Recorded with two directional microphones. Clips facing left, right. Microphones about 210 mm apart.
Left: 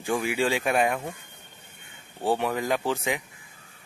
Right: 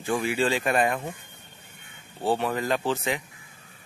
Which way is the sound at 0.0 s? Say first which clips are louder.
Even; 15° left (ahead or behind).